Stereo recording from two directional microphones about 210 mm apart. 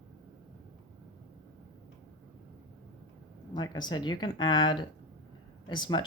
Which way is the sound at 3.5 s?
20° left (ahead or behind).